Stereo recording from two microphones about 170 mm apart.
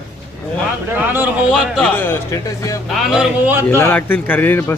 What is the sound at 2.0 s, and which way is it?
Speech, 15° left (ahead or behind).